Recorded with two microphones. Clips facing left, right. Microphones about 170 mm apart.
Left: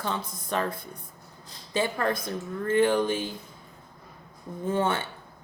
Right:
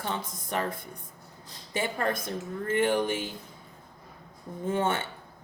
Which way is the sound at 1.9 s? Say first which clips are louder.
Left 2 dB; 25° right (ahead or behind).